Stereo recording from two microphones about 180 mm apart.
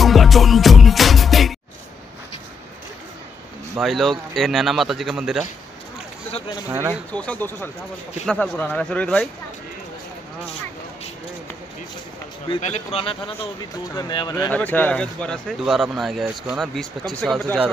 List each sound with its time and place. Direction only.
0.0 s music: centre (ahead or behind)
3.8 s speech: centre (ahead or behind)
7.1 s speech: 5° left (ahead or behind)
12.6 s a man's voice: 35° left (ahead or behind)
14.5 s speech: 10° left (ahead or behind)